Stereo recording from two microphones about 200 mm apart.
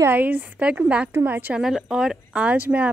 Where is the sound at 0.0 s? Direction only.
10° right (ahead or behind).